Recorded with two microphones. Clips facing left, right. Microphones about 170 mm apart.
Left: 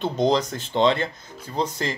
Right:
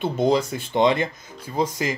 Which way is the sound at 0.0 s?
10° right (ahead or behind).